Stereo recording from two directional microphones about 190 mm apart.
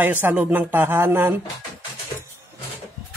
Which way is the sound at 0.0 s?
10° right (ahead or behind).